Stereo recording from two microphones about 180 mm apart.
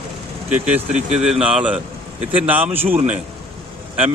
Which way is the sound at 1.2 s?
5° right (ahead or behind).